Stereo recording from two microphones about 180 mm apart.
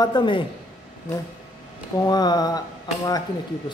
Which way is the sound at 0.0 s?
25° left (ahead or behind).